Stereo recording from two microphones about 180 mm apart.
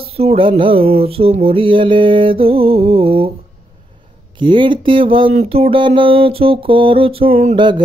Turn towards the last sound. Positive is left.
turn(degrees=-25)  # may be behind; listen again after turning